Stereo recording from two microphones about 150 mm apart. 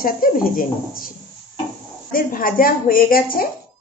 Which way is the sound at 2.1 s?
70° left (ahead or behind).